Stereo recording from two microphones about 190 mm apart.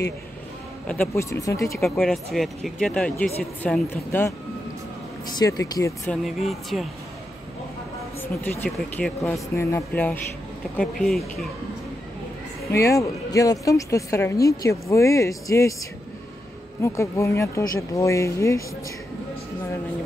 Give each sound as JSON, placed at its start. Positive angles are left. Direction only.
{"t": 0.8, "sound": "a woman's voice", "side_deg": 5}
{"t": 1.9, "sound": "speech", "side_deg": 0}
{"t": 5.3, "sound": "speech", "side_deg": 20}
{"t": 6.2, "sound": "speech", "side_deg": 0}
{"t": 8.2, "sound": "a woman's voice", "side_deg": 10}
{"t": 12.7, "sound": "a woman's voice", "side_deg": 15}
{"t": 16.8, "sound": "a woman's voice", "side_deg": 15}